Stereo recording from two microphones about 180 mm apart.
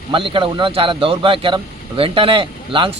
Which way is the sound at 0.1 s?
30° right (ahead or behind).